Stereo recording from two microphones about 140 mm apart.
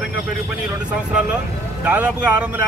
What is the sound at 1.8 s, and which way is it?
Speech, 10° right (ahead or behind).